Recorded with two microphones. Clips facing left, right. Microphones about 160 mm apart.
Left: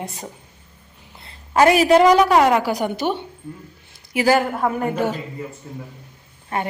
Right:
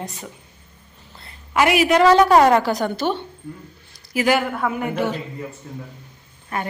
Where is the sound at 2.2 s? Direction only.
5° left (ahead or behind).